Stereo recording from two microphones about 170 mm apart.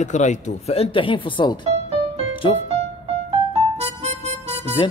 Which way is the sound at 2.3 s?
30° left (ahead or behind).